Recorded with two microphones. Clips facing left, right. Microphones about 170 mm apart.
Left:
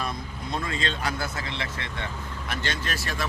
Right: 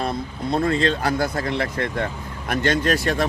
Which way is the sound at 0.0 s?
30° right (ahead or behind).